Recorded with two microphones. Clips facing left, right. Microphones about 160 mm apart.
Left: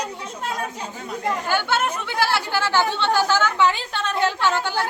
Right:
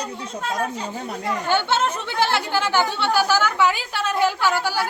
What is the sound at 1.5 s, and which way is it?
A woman's voice, 25° right (ahead or behind).